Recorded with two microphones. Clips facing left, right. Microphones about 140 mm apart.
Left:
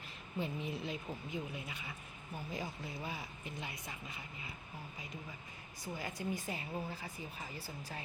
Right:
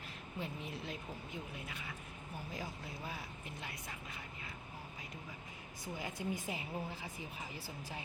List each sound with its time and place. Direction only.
0.3 s speech: centre (ahead or behind)
6.0 s speech: 20° right (ahead or behind)